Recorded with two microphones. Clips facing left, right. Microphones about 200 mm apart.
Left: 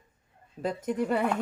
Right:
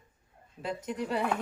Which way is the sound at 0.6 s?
50° left (ahead or behind).